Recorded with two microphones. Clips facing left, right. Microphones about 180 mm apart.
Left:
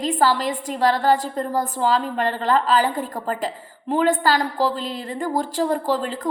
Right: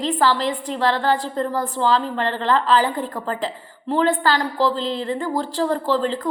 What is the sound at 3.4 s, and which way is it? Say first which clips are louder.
Speech: even; 45° left (ahead or behind).